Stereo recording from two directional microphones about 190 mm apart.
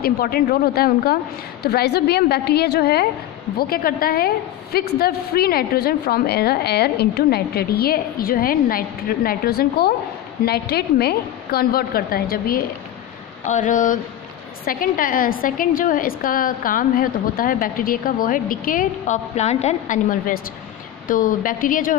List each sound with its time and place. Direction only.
0.0 s a woman's voice: 55° left (ahead or behind)